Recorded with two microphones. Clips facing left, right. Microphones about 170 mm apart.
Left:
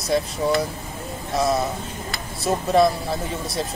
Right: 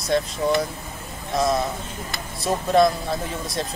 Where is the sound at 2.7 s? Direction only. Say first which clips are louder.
Even; centre (ahead or behind).